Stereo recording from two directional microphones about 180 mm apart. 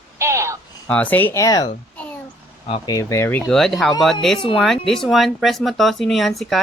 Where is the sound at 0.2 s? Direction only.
15° right (ahead or behind).